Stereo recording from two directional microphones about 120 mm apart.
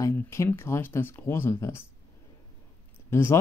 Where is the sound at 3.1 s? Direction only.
20° left (ahead or behind).